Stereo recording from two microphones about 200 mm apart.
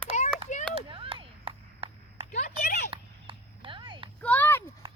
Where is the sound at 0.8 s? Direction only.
25° right (ahead or behind).